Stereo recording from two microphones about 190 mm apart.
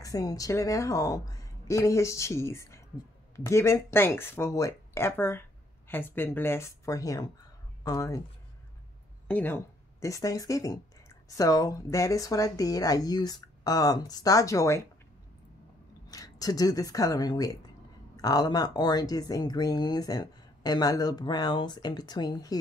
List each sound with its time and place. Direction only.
0.0 s speech: 20° left (ahead or behind)
9.3 s speech: 10° left (ahead or behind)
16.1 s speech: 20° left (ahead or behind)